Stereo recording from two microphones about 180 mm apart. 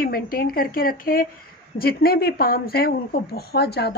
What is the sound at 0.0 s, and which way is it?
A woman's voice, 55° left (ahead or behind).